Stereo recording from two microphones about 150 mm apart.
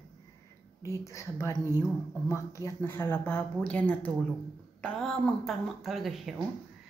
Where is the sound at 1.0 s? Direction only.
20° left (ahead or behind); by 6.4 s centre (ahead or behind).